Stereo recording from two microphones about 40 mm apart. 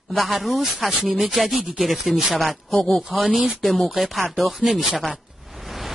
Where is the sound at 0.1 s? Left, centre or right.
Centre.